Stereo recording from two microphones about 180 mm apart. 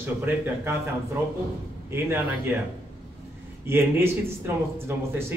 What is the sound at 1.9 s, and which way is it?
Speech, 15° right (ahead or behind).